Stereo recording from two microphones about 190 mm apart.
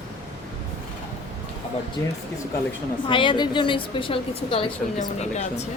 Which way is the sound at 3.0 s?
25° left (ahead or behind).